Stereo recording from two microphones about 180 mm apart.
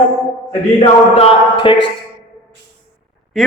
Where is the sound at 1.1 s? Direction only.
30° left (ahead or behind).